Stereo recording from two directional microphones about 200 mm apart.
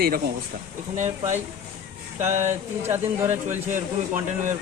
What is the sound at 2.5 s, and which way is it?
Speech, 10° right (ahead or behind).